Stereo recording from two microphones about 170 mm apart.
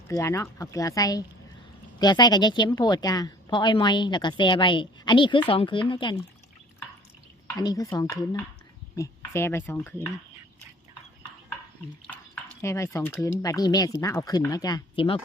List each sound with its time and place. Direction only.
0.1 s a woman's voice: 15° left (ahead or behind)
7.4 s a woman's voice: 20° left (ahead or behind)
12.3 s speech: 15° left (ahead or behind)
13.4 s a woman's voice: 20° left (ahead or behind)